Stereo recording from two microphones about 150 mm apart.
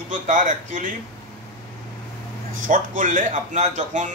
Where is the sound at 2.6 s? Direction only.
60° right (ahead or behind).